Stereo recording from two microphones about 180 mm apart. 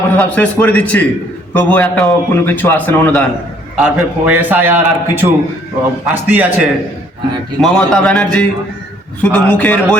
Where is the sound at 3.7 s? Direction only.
5° right (ahead or behind).